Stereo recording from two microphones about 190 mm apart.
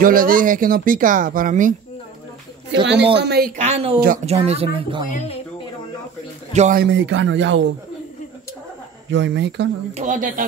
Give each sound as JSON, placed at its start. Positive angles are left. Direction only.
{"t": 0.0, "sound": "speech", "side_deg": -45}
{"t": 2.7, "sound": "speech", "side_deg": -65}
{"t": 3.6, "sound": "speech", "side_deg": -30}
{"t": 6.5, "sound": "a man's voice", "side_deg": -35}
{"t": 6.8, "sound": "speech", "side_deg": -75}
{"t": 9.1, "sound": "speech", "side_deg": -70}
{"t": 9.9, "sound": "speech", "side_deg": -45}